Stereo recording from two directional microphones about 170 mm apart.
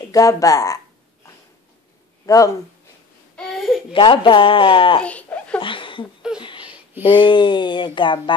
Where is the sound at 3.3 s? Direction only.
5° left (ahead or behind).